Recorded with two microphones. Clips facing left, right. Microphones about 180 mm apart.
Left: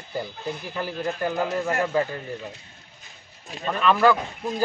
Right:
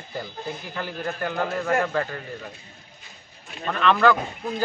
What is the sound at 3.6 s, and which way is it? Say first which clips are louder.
Speech: even; 10° left (ahead or behind).